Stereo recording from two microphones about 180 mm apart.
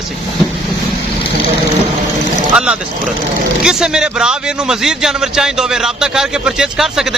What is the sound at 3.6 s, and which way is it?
A man's voice, 5° right (ahead or behind).